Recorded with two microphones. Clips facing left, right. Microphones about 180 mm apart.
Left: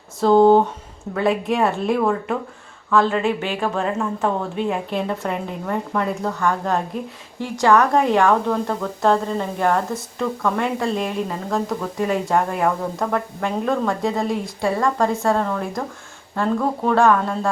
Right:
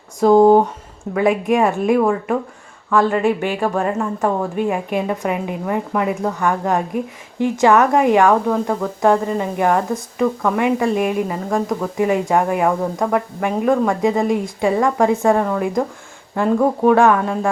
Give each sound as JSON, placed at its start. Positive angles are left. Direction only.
{"t": 0.2, "sound": "speech", "side_deg": -10}